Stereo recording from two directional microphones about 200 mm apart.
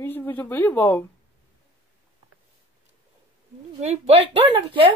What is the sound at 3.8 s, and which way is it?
Speech, 30° right (ahead or behind).